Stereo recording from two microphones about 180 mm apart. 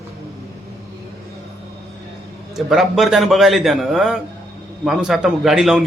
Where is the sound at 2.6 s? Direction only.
Centre (ahead or behind).